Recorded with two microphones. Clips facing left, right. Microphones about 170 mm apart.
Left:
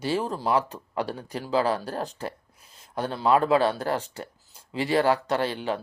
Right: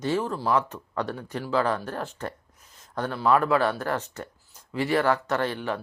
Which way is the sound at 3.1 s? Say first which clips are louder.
Left 1 dB; 20° left (ahead or behind).